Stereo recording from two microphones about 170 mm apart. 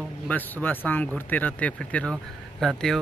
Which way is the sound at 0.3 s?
10° left (ahead or behind).